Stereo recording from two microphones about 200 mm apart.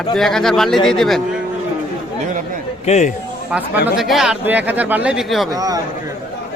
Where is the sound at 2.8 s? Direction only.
35° left (ahead or behind).